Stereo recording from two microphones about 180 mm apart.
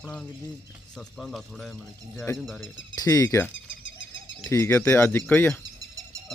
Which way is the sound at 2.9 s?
20° left (ahead or behind).